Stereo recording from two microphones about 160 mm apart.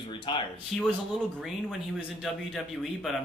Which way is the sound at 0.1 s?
30° left (ahead or behind).